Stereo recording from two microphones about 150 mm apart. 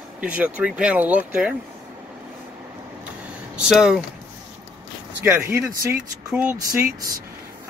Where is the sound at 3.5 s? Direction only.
5° right (ahead or behind).